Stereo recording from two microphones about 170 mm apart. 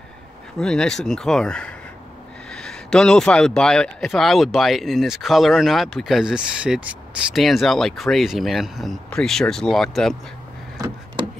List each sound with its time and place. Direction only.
0.6 s a man's voice: 5° left (ahead or behind)